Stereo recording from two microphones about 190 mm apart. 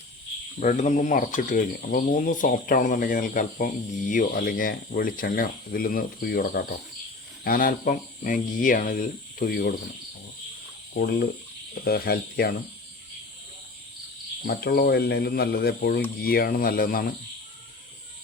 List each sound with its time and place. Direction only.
0.6 s speech: 40° left (ahead or behind)
10.9 s speech: 55° left (ahead or behind)
14.4 s speech: 55° left (ahead or behind)